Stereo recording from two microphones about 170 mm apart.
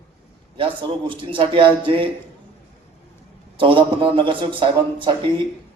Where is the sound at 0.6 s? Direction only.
30° right (ahead or behind).